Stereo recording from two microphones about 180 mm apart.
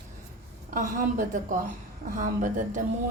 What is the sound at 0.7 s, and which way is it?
A woman's voice, 50° right (ahead or behind).